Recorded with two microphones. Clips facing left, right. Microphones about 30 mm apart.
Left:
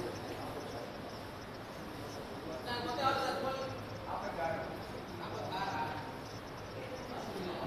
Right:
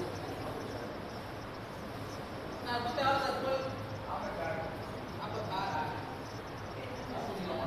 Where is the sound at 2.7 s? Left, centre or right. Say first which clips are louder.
Right 3 dB; right.